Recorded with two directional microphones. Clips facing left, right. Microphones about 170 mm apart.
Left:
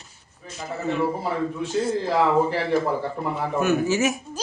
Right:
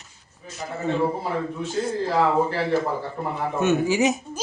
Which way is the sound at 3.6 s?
20° right (ahead or behind).